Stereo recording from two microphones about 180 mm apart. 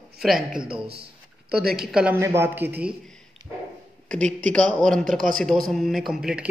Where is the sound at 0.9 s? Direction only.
60° right (ahead or behind).